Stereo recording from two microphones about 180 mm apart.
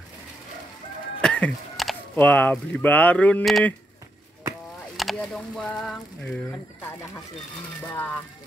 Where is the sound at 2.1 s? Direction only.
10° left (ahead or behind).